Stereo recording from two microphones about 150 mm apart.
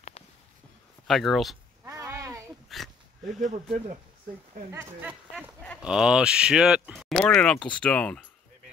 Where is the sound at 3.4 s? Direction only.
55° right (ahead or behind).